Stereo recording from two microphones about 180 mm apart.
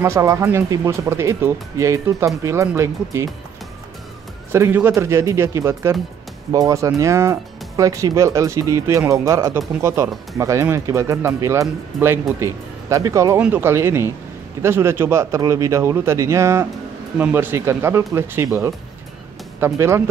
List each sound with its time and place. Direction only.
0.0 s speech: 15° right (ahead or behind)
4.5 s speech: 15° right (ahead or behind)